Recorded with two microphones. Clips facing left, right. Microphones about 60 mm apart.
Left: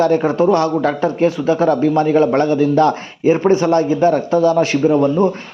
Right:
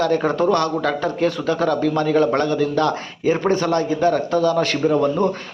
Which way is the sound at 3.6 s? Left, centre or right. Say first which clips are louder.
Left 5 dB; left.